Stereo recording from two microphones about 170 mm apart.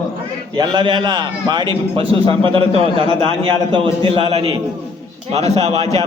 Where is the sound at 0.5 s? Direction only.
25° right (ahead or behind).